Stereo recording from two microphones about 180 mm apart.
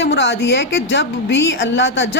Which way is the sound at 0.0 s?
80° left.